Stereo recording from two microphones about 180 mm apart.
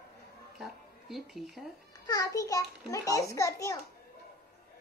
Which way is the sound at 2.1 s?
20° left (ahead or behind).